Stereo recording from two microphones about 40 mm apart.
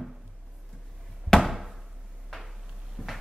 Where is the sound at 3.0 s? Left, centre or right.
Right.